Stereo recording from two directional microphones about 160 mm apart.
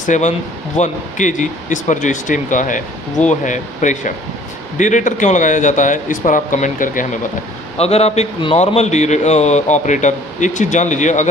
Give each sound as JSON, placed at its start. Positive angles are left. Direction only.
{"t": 0.0, "sound": "a man's voice", "side_deg": 50}
{"t": 7.7, "sound": "a man's voice", "side_deg": 40}